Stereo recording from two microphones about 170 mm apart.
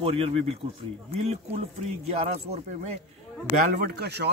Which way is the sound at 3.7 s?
65° right (ahead or behind).